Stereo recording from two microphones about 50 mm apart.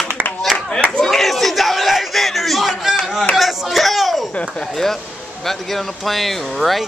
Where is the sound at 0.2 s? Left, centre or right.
Right.